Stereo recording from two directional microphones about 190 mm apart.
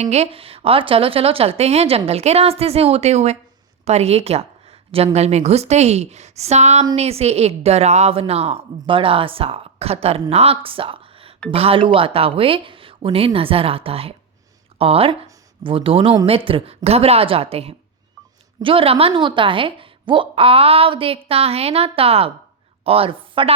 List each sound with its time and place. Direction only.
0.0 s a woman's voice: 35° right (ahead or behind)